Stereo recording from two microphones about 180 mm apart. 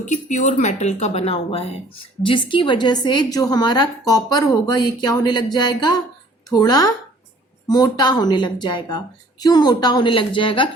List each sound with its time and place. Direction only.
0.0 s a woman's voice: 45° left (ahead or behind)